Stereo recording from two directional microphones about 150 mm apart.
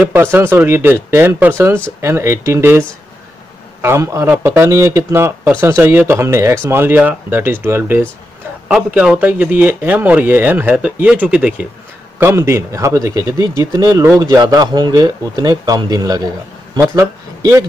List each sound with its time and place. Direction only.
0.0 s speech: 15° right (ahead or behind)
3.8 s a man's voice: 15° right (ahead or behind)